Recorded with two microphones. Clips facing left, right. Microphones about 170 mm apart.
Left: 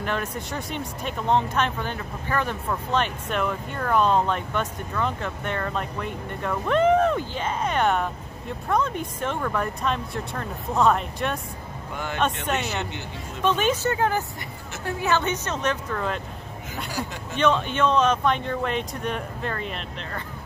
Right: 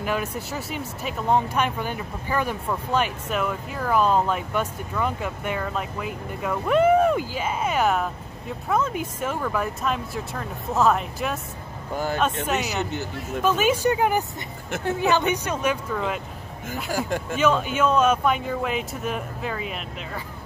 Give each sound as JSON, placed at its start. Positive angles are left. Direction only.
{"t": 0.0, "sound": "speech", "side_deg": -10}
{"t": 11.9, "sound": "speech", "side_deg": -35}
{"t": 13.4, "sound": "a woman's voice", "side_deg": -5}
{"t": 16.9, "sound": "speech", "side_deg": -50}
{"t": 17.4, "sound": "speech", "side_deg": -5}